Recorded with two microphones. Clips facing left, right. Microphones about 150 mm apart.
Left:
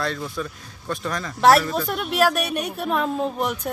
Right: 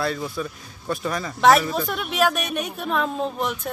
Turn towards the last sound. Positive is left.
turn(degrees=5)  # may be behind; listen again after turning